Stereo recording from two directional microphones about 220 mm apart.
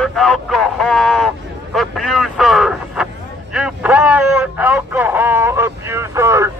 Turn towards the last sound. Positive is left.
turn(degrees=-15)  # may be behind; listen again after turning